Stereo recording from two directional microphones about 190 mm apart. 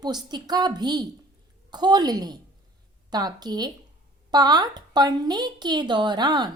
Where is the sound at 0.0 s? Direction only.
20° right (ahead or behind).